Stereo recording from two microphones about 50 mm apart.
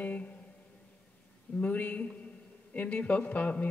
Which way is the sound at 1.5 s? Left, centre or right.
Left.